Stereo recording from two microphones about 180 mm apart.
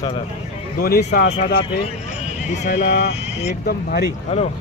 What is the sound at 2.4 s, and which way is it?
Speech, 40° left (ahead or behind).